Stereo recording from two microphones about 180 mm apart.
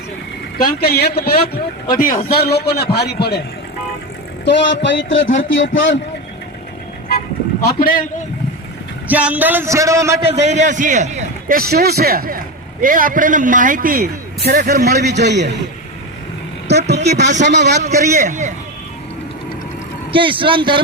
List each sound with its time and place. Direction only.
0.8 s a man's voice: 65° left (ahead or behind)
2.3 s a man's voice: 65° left (ahead or behind)
4.4 s speech: 85° left
7.6 s a man's voice: 50° left (ahead or behind)
9.0 s a man's voice: 10° right (ahead or behind)
10.2 s a man's voice: 35° right (ahead or behind); by 15.5 s 70° right (ahead or behind)
17.0 s a man's voice: 70° right (ahead or behind)
17.8 s a man's voice: 40° right (ahead or behind)
20.1 s speech: 30° right (ahead or behind)